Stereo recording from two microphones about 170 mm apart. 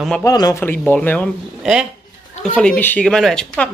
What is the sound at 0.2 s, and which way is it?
A child's voice, 20° left (ahead or behind).